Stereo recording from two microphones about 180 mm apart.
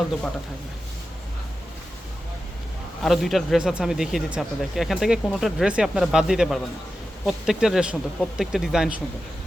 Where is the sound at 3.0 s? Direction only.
Centre (ahead or behind).